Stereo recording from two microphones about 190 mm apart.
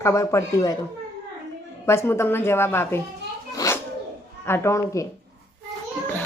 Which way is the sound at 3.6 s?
15° left (ahead or behind).